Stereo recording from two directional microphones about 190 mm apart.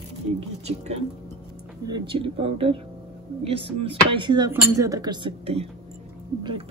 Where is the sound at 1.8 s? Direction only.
25° right (ahead or behind).